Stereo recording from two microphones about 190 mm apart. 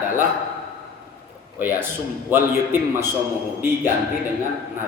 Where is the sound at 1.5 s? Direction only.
10° right (ahead or behind).